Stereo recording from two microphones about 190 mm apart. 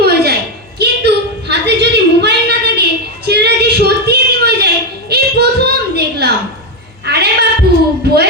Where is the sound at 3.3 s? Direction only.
60° right (ahead or behind).